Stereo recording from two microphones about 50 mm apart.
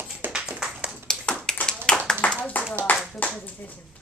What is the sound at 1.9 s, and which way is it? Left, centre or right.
Clapping, centre.